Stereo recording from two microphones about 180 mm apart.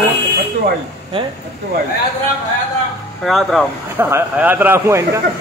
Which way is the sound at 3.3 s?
Centre (ahead or behind).